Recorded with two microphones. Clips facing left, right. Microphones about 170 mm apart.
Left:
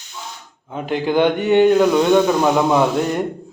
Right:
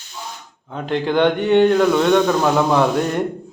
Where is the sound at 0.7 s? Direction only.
5° left (ahead or behind).